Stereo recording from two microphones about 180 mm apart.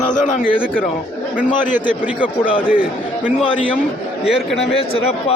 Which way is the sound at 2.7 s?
5° right (ahead or behind).